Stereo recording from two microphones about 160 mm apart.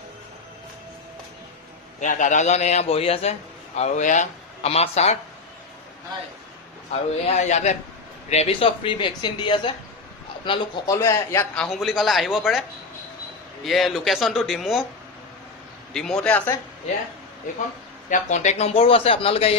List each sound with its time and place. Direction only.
2.0 s a man's voice: 50° left (ahead or behind)
6.9 s a man's voice: 45° left (ahead or behind); by 11.0 s 30° left (ahead or behind)
11.0 s a man's voice: 20° left (ahead or behind)
11.5 s speech: centre (ahead or behind)
13.7 s speech: centre (ahead or behind)
15.9 s a man's voice: 5° left (ahead or behind)
17.4 s a man's voice: 55° left (ahead or behind); by 19.5 s 35° left (ahead or behind)